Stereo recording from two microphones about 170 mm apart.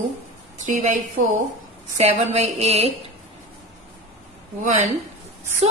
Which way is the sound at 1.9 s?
40° right (ahead or behind).